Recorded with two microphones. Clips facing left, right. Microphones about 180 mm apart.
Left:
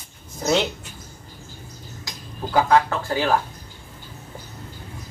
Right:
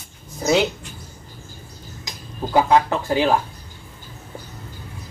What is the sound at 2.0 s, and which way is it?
Speech, 20° right (ahead or behind).